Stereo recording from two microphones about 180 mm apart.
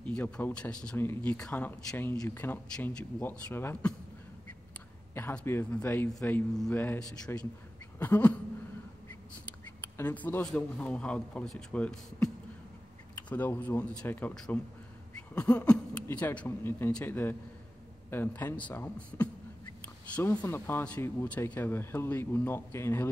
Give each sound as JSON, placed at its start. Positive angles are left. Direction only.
{"t": 0.0, "sound": "speech", "side_deg": 10}
{"t": 5.1, "sound": "speech", "side_deg": 10}
{"t": 9.8, "sound": "speech", "side_deg": 10}
{"t": 13.3, "sound": "speech", "side_deg": 10}